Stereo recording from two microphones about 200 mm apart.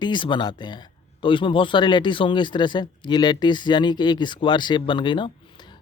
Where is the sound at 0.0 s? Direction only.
25° left (ahead or behind).